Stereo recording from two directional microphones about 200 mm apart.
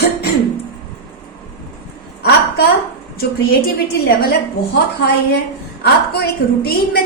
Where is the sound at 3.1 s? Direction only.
50° left (ahead or behind).